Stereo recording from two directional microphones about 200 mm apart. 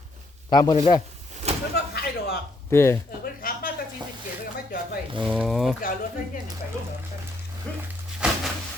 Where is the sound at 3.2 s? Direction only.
45° left (ahead or behind).